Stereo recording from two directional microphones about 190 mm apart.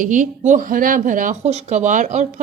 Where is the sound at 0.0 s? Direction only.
40° right (ahead or behind).